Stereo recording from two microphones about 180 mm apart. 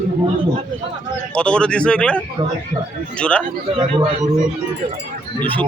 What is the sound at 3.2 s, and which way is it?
Speech, 5° left (ahead or behind).